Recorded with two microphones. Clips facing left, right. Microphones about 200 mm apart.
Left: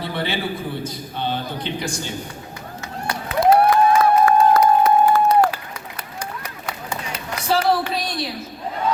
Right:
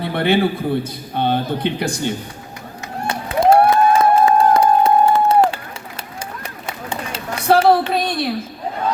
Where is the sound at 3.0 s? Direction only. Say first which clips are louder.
Right 2 dB; 25° right (ahead or behind).